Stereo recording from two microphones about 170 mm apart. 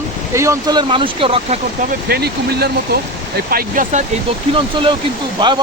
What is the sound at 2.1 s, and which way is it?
Speech, 70° right (ahead or behind).